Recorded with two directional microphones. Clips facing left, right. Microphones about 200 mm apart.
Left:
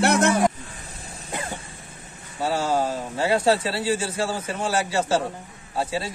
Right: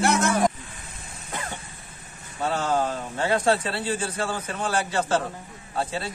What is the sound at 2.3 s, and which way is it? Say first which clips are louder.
A man's voice: left 1 dB; 10° left (ahead or behind).